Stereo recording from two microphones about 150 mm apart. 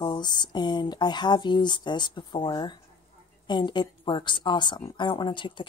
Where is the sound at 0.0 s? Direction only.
30° left (ahead or behind).